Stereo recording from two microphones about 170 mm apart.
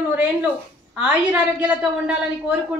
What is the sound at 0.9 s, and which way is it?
A woman's voice, 5° right (ahead or behind).